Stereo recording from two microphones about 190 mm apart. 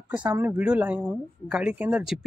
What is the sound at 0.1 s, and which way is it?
Speech, 5° right (ahead or behind).